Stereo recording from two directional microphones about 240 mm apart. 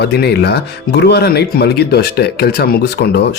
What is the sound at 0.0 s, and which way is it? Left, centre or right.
Speech, left.